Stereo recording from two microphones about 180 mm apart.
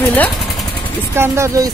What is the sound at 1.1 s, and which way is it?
Speech, 15° right (ahead or behind).